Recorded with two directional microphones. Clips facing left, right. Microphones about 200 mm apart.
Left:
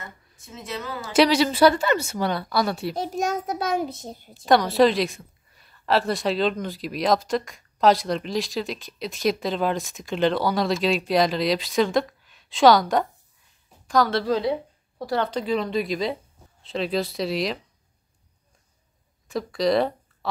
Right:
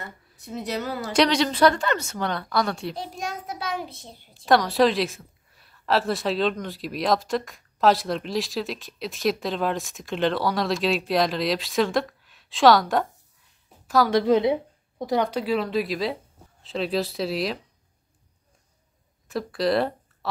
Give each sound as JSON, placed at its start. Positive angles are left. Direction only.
{"t": 0.5, "sound": "speech", "side_deg": -35}
{"t": 1.1, "sound": "a woman's voice", "side_deg": 5}
{"t": 3.0, "sound": "a child's voice", "side_deg": 45}
{"t": 4.5, "sound": "a woman's voice", "side_deg": 0}
{"t": 14.2, "sound": "a woman's voice", "side_deg": -20}
{"t": 19.2, "sound": "speech", "side_deg": 0}